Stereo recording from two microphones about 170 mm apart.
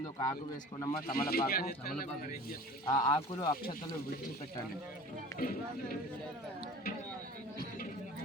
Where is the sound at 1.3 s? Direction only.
60° left (ahead or behind).